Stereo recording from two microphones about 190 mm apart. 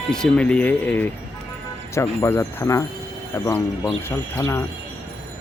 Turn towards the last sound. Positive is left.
turn(degrees=10)  # may be behind; listen again after turning